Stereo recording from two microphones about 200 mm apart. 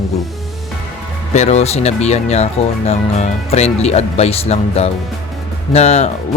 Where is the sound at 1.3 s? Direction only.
35° left (ahead or behind).